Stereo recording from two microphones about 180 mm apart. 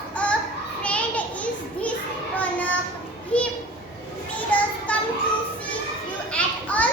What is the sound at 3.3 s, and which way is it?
Children playing, 5° left (ahead or behind).